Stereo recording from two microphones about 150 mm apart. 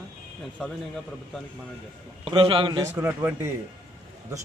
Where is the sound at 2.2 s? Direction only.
35° right (ahead or behind).